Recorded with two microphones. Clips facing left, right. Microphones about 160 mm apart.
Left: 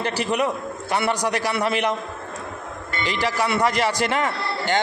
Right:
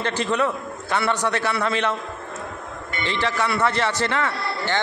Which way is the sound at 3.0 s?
10° left (ahead or behind).